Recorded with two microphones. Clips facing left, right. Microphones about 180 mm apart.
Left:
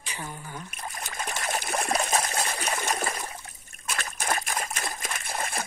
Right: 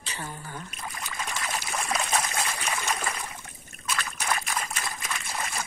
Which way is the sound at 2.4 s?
45° left (ahead or behind).